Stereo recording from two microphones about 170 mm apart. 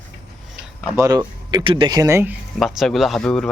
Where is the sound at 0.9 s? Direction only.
20° right (ahead or behind).